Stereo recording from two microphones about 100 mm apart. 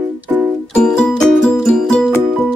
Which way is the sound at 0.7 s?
10° left (ahead or behind).